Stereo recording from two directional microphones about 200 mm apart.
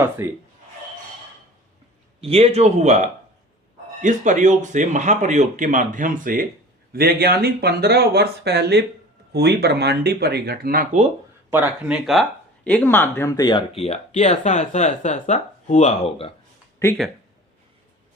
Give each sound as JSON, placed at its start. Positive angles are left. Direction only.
{"t": 0.0, "sound": "speech", "side_deg": -10}
{"t": 2.2, "sound": "speech", "side_deg": -30}
{"t": 11.5, "sound": "speech", "side_deg": -5}
{"t": 13.8, "sound": "speech", "side_deg": 35}